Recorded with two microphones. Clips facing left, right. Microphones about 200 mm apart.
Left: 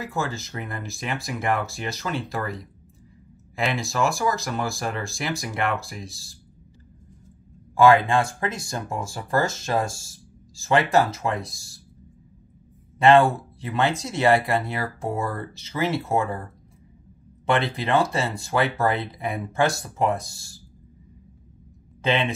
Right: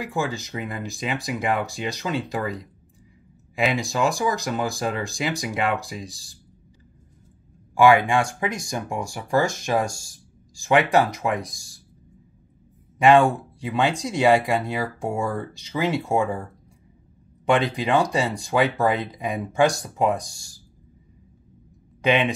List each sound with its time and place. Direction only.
0.0 s speech: 15° right (ahead or behind)
7.7 s speech: 15° right (ahead or behind)
13.0 s speech: 15° right (ahead or behind)
17.5 s speech: 15° right (ahead or behind)
22.0 s speech: 15° right (ahead or behind)